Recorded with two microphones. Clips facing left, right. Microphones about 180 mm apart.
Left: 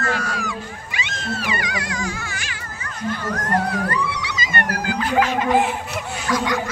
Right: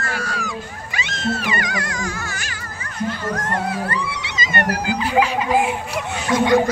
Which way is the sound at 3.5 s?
30° right (ahead or behind).